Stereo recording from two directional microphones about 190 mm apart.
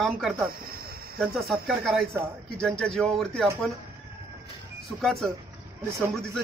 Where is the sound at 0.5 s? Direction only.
50° right (ahead or behind).